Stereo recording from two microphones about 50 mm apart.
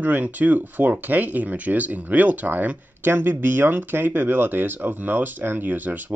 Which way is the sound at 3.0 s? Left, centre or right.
Right.